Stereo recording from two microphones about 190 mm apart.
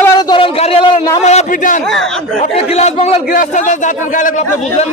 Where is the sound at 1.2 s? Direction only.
40° left (ahead or behind).